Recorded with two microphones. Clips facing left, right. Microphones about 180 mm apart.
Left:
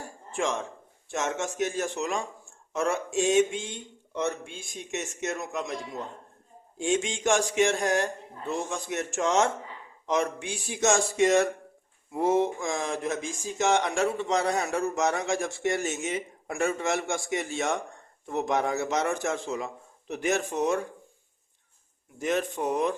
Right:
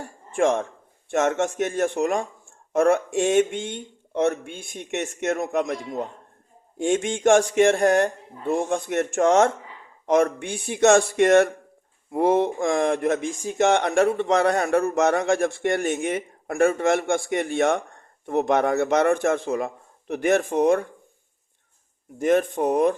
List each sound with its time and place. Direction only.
0.3 s speech: 55° right (ahead or behind)
22.2 s speech: 50° right (ahead or behind)